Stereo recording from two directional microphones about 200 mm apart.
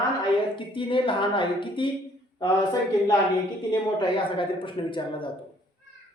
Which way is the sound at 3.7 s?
25° left (ahead or behind).